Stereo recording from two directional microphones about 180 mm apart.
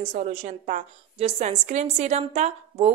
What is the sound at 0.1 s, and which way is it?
A woman's voice, 40° right (ahead or behind).